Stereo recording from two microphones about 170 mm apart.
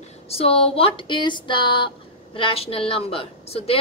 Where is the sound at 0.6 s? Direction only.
35° left (ahead or behind).